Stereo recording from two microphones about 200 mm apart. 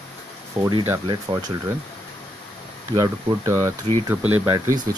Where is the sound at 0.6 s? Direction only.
10° right (ahead or behind).